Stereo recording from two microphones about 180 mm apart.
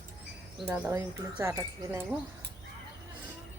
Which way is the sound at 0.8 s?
15° right (ahead or behind).